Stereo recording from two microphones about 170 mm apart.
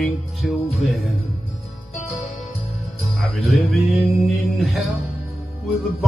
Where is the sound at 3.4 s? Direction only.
Centre (ahead or behind).